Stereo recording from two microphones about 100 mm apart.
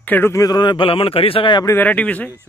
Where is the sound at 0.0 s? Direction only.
15° left (ahead or behind).